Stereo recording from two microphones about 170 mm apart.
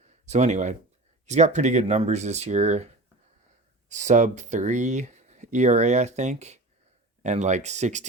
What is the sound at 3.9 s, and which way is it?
Speech, 45° right (ahead or behind).